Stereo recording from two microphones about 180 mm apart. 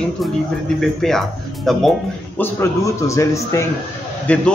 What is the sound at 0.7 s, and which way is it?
A man's voice, centre (ahead or behind).